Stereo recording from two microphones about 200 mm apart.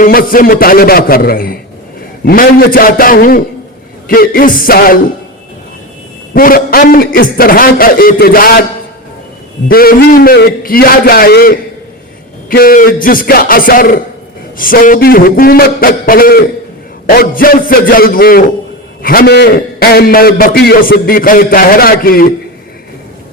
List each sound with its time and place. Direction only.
0.0 s a man's voice: 45° left (ahead or behind)
6.3 s a man's voice: 45° left (ahead or behind)
9.6 s a man's voice: 50° left (ahead or behind)